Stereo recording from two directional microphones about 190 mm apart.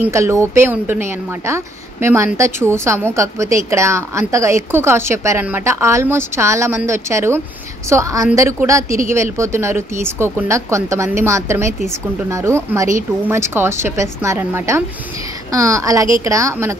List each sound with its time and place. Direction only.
0.0 s a woman's voice: 15° right (ahead or behind)